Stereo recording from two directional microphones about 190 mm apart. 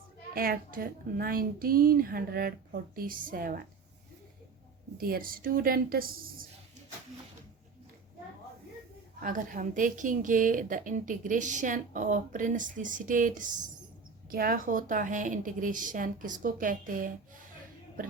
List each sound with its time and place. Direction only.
0.3 s a woman's voice: 50° right (ahead or behind)
4.9 s a woman's voice: 50° right (ahead or behind)
9.2 s a woman's voice: 45° right (ahead or behind)